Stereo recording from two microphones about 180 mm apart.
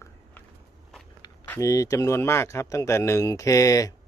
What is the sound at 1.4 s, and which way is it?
Speech, 15° left (ahead or behind).